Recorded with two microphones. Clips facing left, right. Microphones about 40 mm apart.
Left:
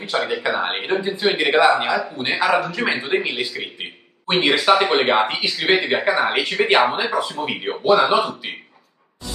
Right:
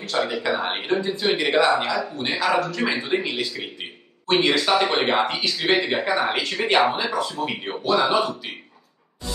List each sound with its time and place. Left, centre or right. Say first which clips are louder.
0.0 s a man's voice: left 2 dB; centre
1.9 s a man's voice: left 3 dB; centre
2.1 s a man's voice: left 2 dB; left